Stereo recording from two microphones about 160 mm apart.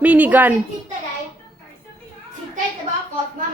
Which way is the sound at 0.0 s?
10° right (ahead or behind).